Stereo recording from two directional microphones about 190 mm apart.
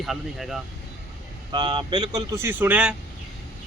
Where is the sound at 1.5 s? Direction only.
25° right (ahead or behind).